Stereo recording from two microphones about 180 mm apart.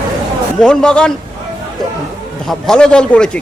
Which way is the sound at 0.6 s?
5° left (ahead or behind).